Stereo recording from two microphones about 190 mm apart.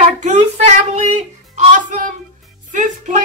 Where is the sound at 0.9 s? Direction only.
35° right (ahead or behind).